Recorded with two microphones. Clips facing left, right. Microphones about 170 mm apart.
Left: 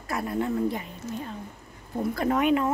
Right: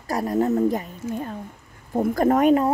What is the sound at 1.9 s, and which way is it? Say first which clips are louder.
Speech: right 6 dB; 45° right (ahead or behind).